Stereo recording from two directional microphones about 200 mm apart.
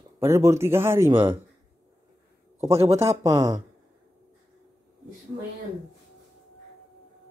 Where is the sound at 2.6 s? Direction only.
15° right (ahead or behind).